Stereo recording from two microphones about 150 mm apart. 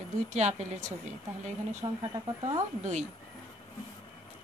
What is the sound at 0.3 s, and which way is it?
Speech, 50° right (ahead or behind).